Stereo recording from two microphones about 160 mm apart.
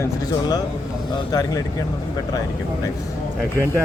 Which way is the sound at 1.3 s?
25° left (ahead or behind).